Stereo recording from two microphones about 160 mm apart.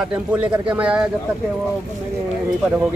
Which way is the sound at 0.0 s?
5° right (ahead or behind).